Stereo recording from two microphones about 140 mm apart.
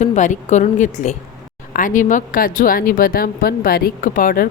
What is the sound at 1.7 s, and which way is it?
A woman's voice, 75° left (ahead or behind).